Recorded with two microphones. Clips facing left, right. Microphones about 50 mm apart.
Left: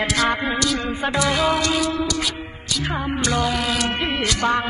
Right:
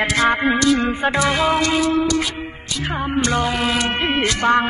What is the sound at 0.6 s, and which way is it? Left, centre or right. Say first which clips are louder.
Music: right 6 dB; right.